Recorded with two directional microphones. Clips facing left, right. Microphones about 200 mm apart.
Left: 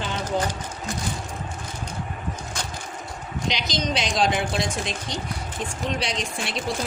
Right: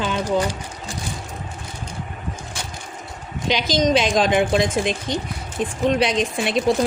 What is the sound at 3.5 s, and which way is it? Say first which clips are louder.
Speech: right 10 dB; 50° right (ahead or behind).